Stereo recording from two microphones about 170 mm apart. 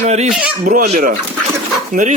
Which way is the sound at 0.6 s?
60° right (ahead or behind).